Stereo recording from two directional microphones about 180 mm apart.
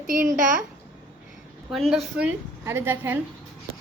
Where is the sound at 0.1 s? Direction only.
45° right (ahead or behind).